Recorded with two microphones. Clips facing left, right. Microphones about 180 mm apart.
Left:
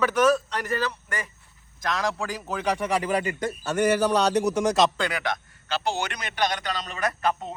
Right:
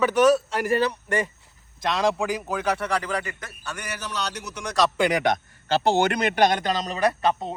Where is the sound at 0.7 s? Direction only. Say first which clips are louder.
Right 8 dB; 30° right (ahead or behind).